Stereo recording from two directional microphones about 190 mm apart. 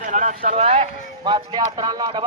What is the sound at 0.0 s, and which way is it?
Speech, 40° right (ahead or behind).